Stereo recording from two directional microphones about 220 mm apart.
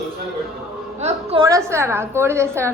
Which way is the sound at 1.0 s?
20° right (ahead or behind).